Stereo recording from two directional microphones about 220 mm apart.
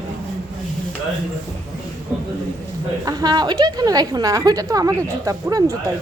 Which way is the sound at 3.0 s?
20° right (ahead or behind).